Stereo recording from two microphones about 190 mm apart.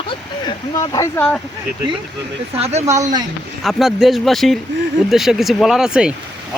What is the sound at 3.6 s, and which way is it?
Speech, centre (ahead or behind).